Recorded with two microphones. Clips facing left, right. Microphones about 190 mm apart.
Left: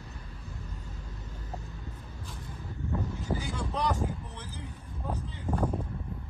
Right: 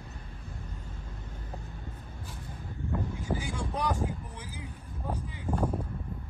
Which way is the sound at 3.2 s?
10° right (ahead or behind).